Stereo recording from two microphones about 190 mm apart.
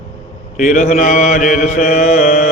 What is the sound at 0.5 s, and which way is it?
Mantra, 40° left (ahead or behind).